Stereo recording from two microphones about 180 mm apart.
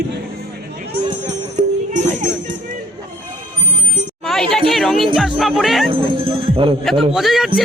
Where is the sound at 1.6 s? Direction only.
40° right (ahead or behind).